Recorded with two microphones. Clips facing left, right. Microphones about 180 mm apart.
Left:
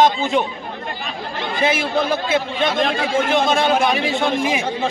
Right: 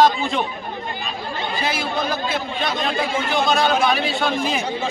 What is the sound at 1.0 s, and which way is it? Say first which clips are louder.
Chatter: left 2 dB; 90° left.